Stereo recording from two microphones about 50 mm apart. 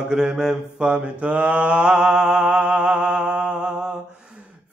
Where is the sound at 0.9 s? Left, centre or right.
Right.